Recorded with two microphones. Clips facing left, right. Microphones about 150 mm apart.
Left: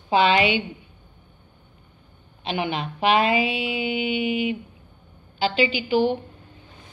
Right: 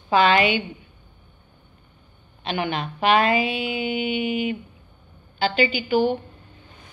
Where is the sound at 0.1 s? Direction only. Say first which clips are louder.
Right 1 dB; 45° right (ahead or behind).